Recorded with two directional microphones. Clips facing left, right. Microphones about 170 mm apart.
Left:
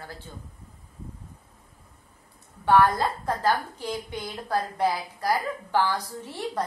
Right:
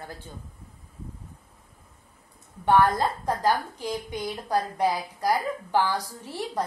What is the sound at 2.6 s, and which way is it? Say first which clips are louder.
A woman's voice: even; 20° right (ahead or behind).